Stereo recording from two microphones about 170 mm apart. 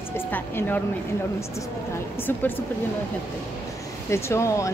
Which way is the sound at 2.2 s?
10° left (ahead or behind).